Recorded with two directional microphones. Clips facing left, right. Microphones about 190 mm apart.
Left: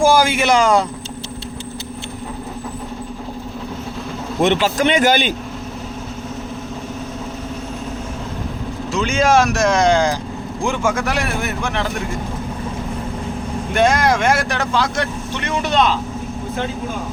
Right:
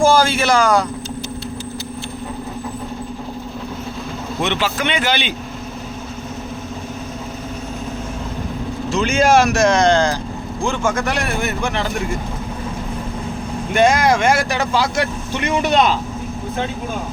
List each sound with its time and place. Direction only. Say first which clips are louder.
0.0 s speech: even; 15° left (ahead or behind)
4.4 s speech: left 5 dB; 45° left (ahead or behind)
8.9 s speech: right 1 dB; centre (ahead or behind)
13.7 s speech: right 1 dB; centre (ahead or behind)